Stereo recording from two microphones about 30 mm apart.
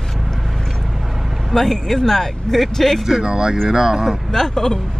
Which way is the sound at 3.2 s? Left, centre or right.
Right.